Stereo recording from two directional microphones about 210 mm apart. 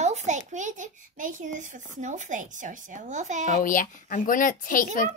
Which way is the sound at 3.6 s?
40° left (ahead or behind).